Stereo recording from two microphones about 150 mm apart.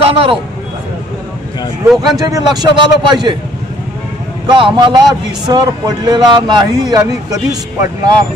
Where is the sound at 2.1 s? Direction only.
25° right (ahead or behind).